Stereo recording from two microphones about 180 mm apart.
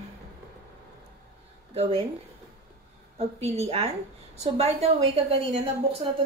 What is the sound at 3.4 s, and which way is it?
A woman's voice, 35° right (ahead or behind).